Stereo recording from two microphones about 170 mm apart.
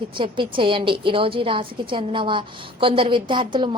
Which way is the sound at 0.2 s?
30° right (ahead or behind).